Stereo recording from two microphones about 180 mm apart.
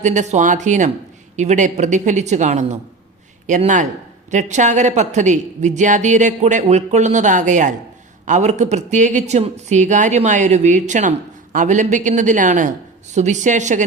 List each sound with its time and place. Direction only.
0.0 s a woman's voice: 40° right (ahead or behind)